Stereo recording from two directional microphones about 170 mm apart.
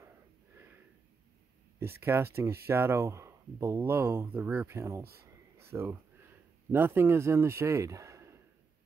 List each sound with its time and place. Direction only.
1.8 s speech: 15° right (ahead or behind)
5.6 s a sound: 15° right (ahead or behind)
6.7 s speech: 15° right (ahead or behind)